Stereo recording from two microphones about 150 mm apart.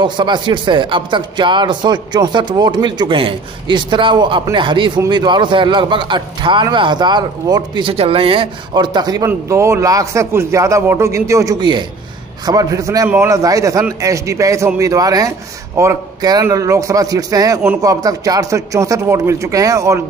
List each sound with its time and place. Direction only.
0.0 s a man's voice: 30° right (ahead or behind)